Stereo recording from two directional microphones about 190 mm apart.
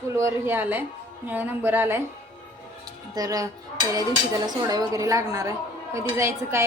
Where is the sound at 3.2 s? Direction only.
20° right (ahead or behind).